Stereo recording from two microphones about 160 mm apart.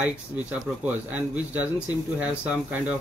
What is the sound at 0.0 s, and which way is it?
Speech, 10° right (ahead or behind).